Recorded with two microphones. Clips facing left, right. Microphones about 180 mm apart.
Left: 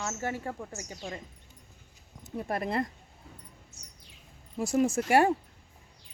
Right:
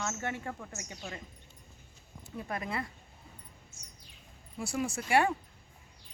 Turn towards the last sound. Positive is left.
turn(degrees=40)  # may be behind; listen again after turning